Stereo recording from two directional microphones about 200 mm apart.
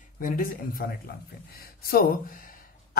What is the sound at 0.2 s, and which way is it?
A man's voice, 45° left (ahead or behind).